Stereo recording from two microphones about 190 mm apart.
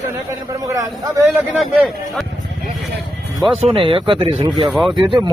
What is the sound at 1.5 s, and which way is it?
Speech, centre (ahead or behind).